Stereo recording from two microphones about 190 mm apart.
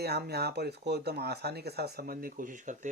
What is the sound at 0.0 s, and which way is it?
Speech, 55° right (ahead or behind).